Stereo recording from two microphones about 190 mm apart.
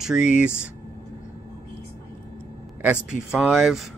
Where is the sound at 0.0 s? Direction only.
5° right (ahead or behind).